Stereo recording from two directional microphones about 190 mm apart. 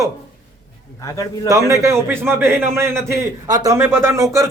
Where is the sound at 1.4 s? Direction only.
15° right (ahead or behind).